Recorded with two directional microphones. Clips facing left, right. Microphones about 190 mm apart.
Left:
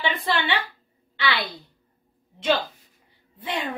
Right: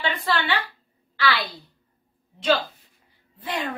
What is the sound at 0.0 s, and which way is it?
Speech, 20° left (ahead or behind).